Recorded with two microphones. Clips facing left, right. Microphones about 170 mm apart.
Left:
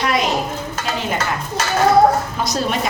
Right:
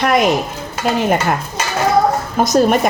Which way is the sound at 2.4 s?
50° right (ahead or behind).